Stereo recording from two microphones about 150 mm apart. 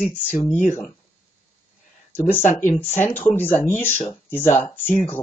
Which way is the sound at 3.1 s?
15° left (ahead or behind).